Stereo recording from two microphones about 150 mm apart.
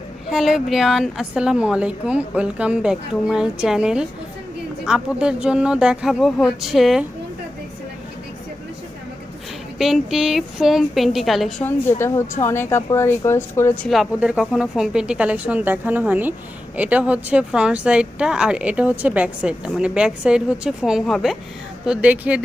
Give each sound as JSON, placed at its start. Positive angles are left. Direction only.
{"t": 0.3, "sound": "a woman's voice", "side_deg": 0}
{"t": 9.7, "sound": "a woman's voice", "side_deg": 0}
{"t": 11.6, "sound": "a woman's voice", "side_deg": 15}
{"t": 13.8, "sound": "speech", "side_deg": 0}